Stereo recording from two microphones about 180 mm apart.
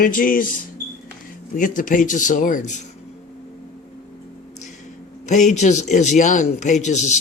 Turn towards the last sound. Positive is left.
turn(degrees=40)  # may be behind; listen again after turning